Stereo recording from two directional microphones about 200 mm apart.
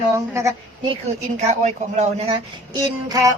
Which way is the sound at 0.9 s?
35° right (ahead or behind).